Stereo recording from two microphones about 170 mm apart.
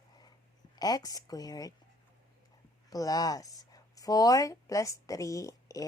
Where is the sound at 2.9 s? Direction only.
20° left (ahead or behind).